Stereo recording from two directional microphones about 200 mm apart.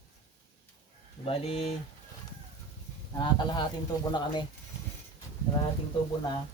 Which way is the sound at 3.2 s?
20° left (ahead or behind).